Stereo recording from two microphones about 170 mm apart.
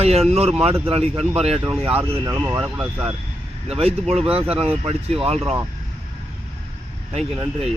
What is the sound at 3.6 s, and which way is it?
Speech, 35° right (ahead or behind).